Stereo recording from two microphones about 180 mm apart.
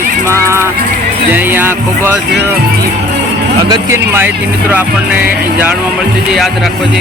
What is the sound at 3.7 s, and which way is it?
Speech, 15° right (ahead or behind).